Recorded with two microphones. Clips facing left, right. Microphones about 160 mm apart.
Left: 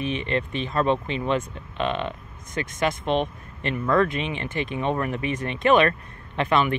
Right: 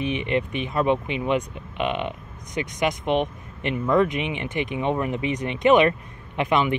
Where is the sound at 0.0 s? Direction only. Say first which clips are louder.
Right 2 dB; 15° right (ahead or behind).